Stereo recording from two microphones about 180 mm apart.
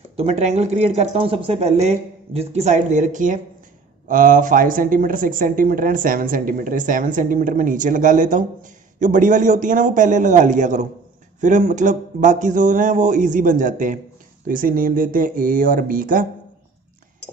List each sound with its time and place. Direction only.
0.2 s speech: 35° right (ahead or behind)